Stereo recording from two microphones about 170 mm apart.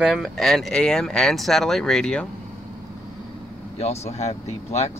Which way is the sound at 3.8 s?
40° left (ahead or behind).